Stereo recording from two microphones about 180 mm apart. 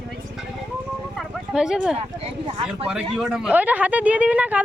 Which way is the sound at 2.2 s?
30° right (ahead or behind).